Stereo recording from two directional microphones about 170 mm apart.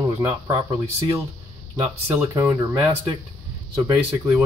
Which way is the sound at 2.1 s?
15° right (ahead or behind).